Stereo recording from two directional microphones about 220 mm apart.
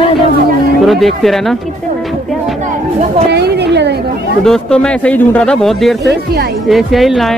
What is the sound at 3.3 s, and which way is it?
Speech, 50° right (ahead or behind).